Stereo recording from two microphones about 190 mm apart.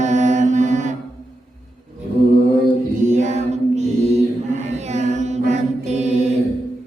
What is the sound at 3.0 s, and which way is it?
Mantra, 40° right (ahead or behind).